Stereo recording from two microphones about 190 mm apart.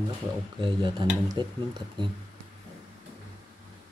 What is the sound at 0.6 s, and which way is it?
Speech, 25° right (ahead or behind).